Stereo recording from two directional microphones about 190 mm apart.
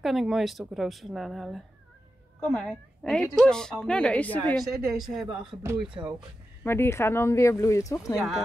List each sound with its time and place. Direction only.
0.0 s a woman's voice: centre (ahead or behind)
5.2 s speech: 25° right (ahead or behind)
6.6 s speech: 10° left (ahead or behind)
8.2 s a woman's voice: centre (ahead or behind)